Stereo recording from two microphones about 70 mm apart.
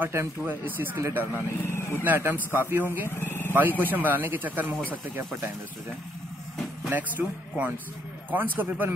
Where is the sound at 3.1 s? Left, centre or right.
Left.